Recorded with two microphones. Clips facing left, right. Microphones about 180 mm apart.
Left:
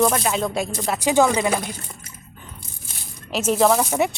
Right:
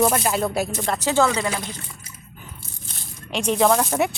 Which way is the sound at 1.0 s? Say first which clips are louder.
Left 3 dB; 15° left (ahead or behind).